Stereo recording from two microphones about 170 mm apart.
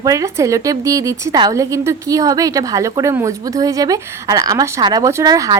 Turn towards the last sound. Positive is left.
turn(degrees=-20)  # may be behind; listen again after turning